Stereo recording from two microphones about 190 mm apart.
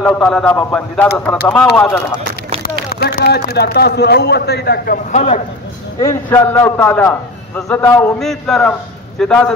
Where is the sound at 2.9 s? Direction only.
60° left (ahead or behind).